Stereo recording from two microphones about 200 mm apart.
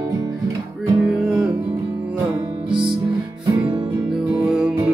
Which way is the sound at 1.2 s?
5° right (ahead or behind).